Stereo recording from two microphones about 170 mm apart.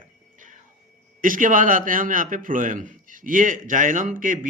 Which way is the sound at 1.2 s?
50° right (ahead or behind).